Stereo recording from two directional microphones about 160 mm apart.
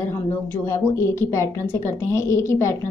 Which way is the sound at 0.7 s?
15° left (ahead or behind).